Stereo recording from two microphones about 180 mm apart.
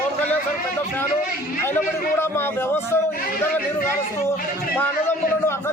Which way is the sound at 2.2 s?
10° left (ahead or behind).